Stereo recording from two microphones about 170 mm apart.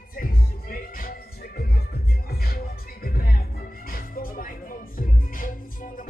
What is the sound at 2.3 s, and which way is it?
Music, 60° left (ahead or behind).